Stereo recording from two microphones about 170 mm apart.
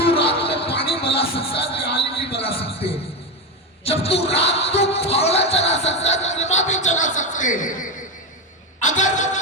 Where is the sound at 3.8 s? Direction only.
35° left (ahead or behind).